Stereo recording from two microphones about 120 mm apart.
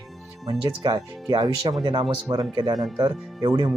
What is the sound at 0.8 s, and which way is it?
Speech, 35° right (ahead or behind).